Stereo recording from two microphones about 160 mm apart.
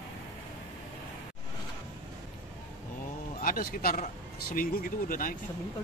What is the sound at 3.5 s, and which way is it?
Speech, 65° left (ahead or behind).